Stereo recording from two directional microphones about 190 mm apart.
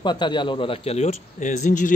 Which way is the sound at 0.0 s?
25° left (ahead or behind).